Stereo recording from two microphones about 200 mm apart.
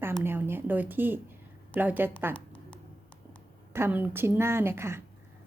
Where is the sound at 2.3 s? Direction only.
5° left (ahead or behind).